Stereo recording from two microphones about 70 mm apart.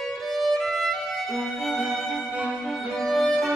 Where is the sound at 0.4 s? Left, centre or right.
Centre.